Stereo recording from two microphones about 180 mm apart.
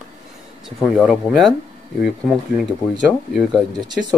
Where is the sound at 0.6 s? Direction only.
5° right (ahead or behind).